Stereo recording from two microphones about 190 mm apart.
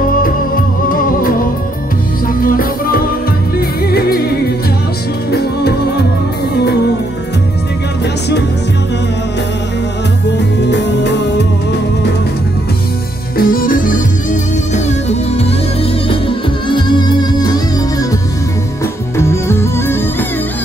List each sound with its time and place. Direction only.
0.8 s music: 50° left (ahead or behind)
2.4 s music: 50° left (ahead or behind)
5.3 s music: 55° left (ahead or behind)
10.6 s music: 65° left (ahead or behind)
13.4 s music: 50° left (ahead or behind)
14.7 s music: 35° left (ahead or behind)
19.1 s music: 15° left (ahead or behind)